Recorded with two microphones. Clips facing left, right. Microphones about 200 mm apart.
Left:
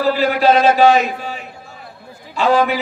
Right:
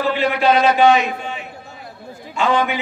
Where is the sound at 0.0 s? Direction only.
40° left (ahead or behind).